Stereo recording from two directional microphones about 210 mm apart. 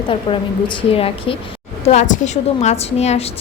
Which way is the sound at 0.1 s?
25° left (ahead or behind).